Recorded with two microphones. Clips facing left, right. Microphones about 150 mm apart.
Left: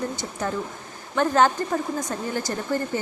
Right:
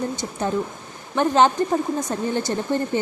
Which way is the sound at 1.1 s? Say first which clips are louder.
Right 2 dB; 20° right (ahead or behind).